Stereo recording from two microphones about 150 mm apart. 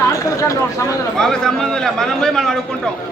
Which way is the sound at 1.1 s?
5° left (ahead or behind).